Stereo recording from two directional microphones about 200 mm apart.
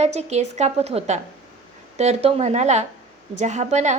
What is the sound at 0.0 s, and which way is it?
A woman's voice, 35° right (ahead or behind).